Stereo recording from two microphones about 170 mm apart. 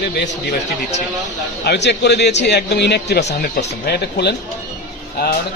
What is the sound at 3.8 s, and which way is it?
Speech, 75° left (ahead or behind).